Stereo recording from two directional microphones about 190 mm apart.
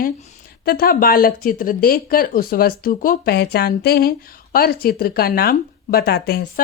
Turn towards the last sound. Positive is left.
turn(degrees=55)  # may be behind; listen again after turning